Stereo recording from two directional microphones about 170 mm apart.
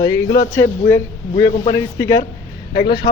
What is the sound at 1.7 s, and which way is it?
Speech, 15° left (ahead or behind).